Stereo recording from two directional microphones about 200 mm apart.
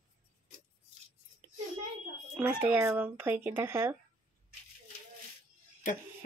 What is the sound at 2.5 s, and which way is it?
Speech, 10° right (ahead or behind).